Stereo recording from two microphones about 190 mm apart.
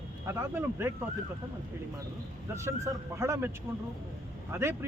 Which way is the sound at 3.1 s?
15° right (ahead or behind).